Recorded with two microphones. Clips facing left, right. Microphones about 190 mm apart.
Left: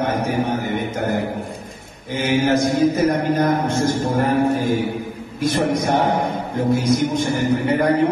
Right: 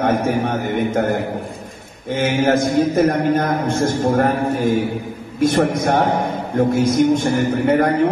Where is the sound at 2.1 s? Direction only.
50° right (ahead or behind).